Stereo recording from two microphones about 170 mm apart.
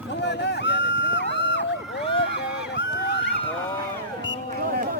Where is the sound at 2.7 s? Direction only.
90° left.